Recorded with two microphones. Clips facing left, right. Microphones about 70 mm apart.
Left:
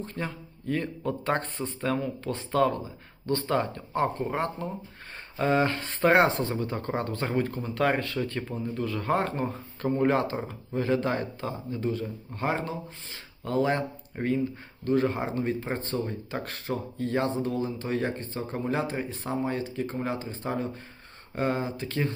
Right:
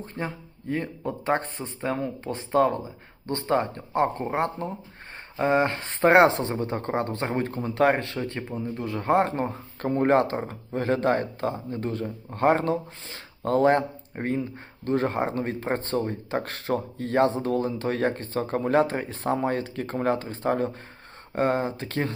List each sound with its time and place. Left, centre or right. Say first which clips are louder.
0.2 s speech: right 6 dB; right
17.4 s speech: right 4 dB; right